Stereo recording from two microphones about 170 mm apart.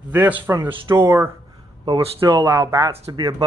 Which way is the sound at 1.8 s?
30° right (ahead or behind).